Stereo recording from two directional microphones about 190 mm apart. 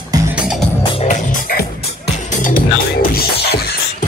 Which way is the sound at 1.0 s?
45° left (ahead or behind).